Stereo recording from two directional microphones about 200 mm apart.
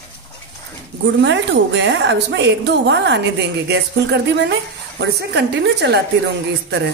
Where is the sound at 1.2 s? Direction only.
65° right (ahead or behind).